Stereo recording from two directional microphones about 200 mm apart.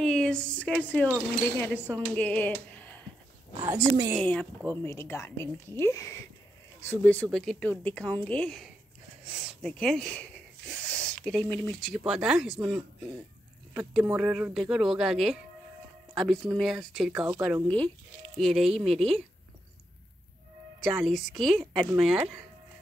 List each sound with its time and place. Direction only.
0.0 s speech: 5° left (ahead or behind)
3.5 s a woman's voice: 15° right (ahead or behind)
4.2 s speech: 5° left (ahead or behind)
11.9 s speech: 5° right (ahead or behind)
16.5 s speech: centre (ahead or behind)
18.9 s speech: 30° right (ahead or behind)
20.9 s speech: centre (ahead or behind)